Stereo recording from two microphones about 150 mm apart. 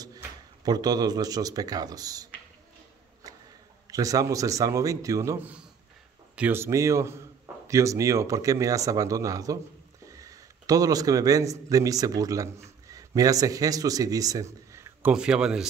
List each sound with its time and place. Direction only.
0.7 s speech: 25° right (ahead or behind)
3.8 s a man's voice: 25° right (ahead or behind); by 15.6 s 5° right (ahead or behind)